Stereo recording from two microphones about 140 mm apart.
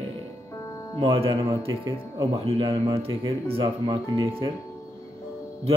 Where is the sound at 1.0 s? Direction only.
45° right (ahead or behind).